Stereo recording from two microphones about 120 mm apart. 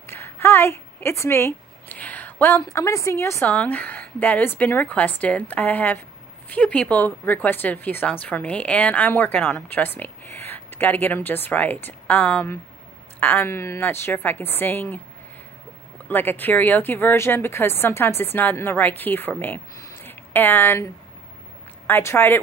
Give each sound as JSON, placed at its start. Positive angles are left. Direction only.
{"t": 0.0, "sound": "a sound", "side_deg": 20}
{"t": 2.7, "sound": "a woman's voice", "side_deg": 25}
{"t": 3.4, "sound": "speech", "side_deg": 10}
{"t": 16.1, "sound": "speech", "side_deg": 15}
{"t": 19.8, "sound": "a sound", "side_deg": 20}
{"t": 21.8, "sound": "speech", "side_deg": 20}